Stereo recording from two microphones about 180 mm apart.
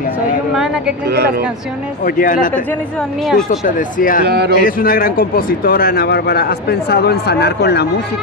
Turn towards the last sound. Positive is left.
turn(degrees=65)  # may be behind; listen again after turning